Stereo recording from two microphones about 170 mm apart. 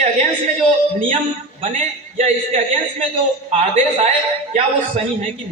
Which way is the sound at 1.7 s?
40° right (ahead or behind).